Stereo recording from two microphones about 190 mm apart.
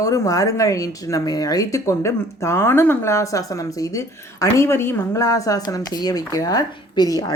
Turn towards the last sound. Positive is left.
turn(degrees=20)  # may be behind; listen again after turning